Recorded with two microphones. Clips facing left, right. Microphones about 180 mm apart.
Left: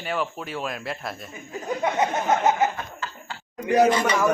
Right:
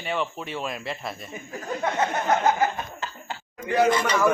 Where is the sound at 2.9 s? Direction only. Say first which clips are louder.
Right 1 dB; 20° right (ahead or behind).